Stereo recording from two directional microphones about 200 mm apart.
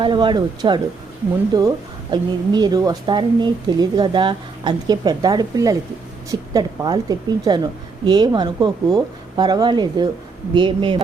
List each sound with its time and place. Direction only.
0.0 s a woman's voice: 25° right (ahead or behind)